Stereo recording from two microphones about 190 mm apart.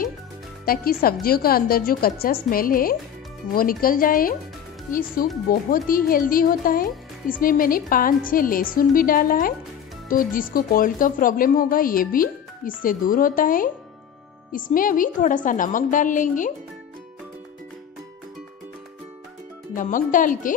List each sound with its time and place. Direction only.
0.7 s speech: 50° left (ahead or behind)
19.7 s speech: 45° left (ahead or behind)